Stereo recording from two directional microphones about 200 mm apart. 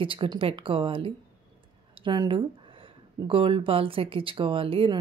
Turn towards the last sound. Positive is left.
turn(degrees=-25)  # may be behind; listen again after turning